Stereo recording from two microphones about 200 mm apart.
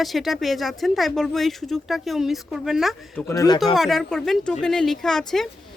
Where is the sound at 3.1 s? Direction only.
15° left (ahead or behind).